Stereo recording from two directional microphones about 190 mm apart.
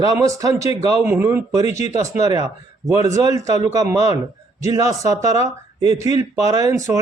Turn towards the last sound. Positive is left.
turn(degrees=-15)  # may be behind; listen again after turning